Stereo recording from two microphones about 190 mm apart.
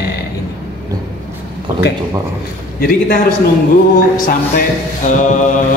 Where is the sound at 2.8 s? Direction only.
50° left (ahead or behind).